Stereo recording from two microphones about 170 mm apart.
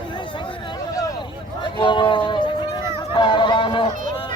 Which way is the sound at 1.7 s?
30° left (ahead or behind).